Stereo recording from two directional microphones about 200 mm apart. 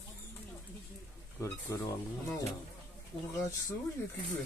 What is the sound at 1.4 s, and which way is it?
Speech, 15° left (ahead or behind).